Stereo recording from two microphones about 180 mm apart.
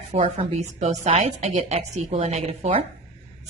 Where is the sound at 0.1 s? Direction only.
35° right (ahead or behind).